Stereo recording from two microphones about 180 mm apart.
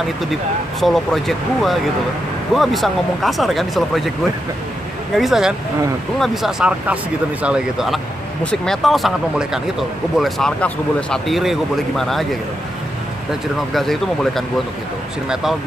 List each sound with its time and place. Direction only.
0.3 s speech: centre (ahead or behind)
5.1 s speech: centre (ahead or behind)
13.7 s speech: centre (ahead or behind)